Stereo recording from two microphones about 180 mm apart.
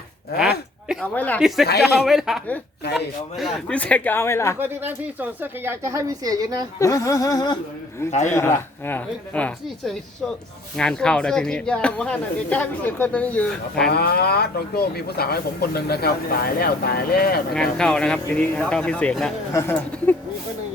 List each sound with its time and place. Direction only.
1.0 s a woman's voice: 10° left (ahead or behind)
4.6 s speech: 10° right (ahead or behind)
6.7 s a woman's voice: 15° left (ahead or behind)
13.9 s speech: 60° left (ahead or behind)
17.5 s speech: 5° left (ahead or behind)